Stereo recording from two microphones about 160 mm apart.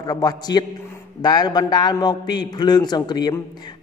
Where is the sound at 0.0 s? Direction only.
25° left (ahead or behind).